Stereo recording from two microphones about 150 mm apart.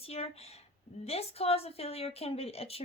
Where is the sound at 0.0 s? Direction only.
40° left (ahead or behind).